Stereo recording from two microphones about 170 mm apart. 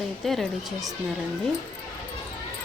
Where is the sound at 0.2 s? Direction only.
Centre (ahead or behind).